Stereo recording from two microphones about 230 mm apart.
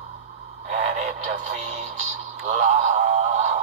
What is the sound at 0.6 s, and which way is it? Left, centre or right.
Radio, right.